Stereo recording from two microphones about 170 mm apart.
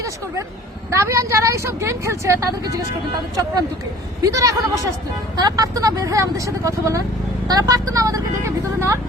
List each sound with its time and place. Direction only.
0.9 s a woman's voice: 15° right (ahead or behind)
4.2 s a woman's voice: 20° right (ahead or behind)